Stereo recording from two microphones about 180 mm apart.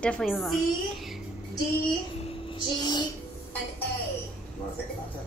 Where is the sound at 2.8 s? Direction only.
25° left (ahead or behind).